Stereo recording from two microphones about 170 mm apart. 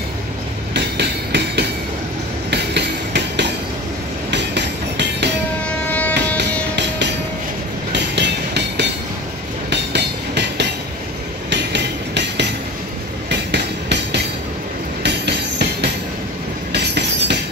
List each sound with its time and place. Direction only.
0.7 s train: 80° right
2.5 s music: 85° right
5.9 s train: 10° left (ahead or behind)
7.9 s train: 90° right
11.5 s music: 85° right
15.0 s train: 80° right